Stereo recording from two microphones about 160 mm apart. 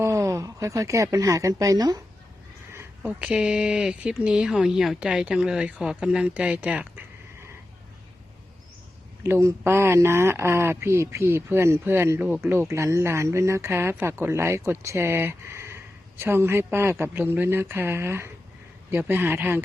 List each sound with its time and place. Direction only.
0.0 s speech: 20° right (ahead or behind)
2.7 s speech: 10° right (ahead or behind)
9.2 s speech: 15° right (ahead or behind)